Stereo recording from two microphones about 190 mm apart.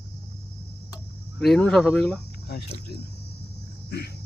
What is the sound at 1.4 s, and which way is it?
Speech, 5° left (ahead or behind).